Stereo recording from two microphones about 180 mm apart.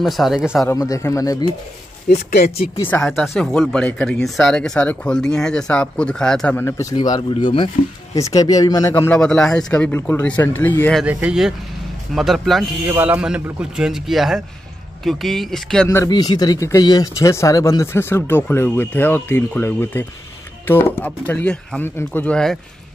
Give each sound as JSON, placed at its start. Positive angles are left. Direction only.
{"t": 0.0, "sound": "a man's voice", "side_deg": 0}
{"t": 0.7, "sound": "speech", "side_deg": 20}
{"t": 2.9, "sound": "speech", "side_deg": 5}
{"t": 11.0, "sound": "a man's voice", "side_deg": -5}
{"t": 15.9, "sound": "speech", "side_deg": 20}